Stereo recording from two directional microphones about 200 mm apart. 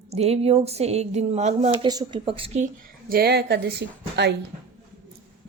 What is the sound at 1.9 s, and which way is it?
A woman's voice, 20° right (ahead or behind).